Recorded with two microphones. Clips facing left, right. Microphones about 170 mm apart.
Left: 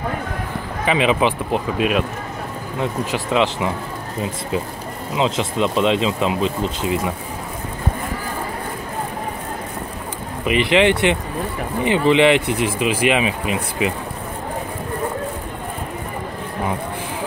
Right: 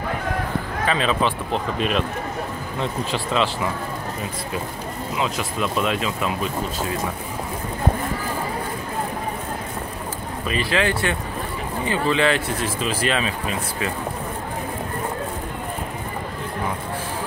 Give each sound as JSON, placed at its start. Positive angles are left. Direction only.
{"t": 0.8, "sound": "speech", "side_deg": 15}
{"t": 5.1, "sound": "speech", "side_deg": 25}
{"t": 10.4, "sound": "speech", "side_deg": 20}